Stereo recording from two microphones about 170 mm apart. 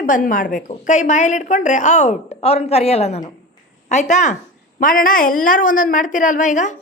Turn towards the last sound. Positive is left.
turn(degrees=45)  # may be behind; listen again after turning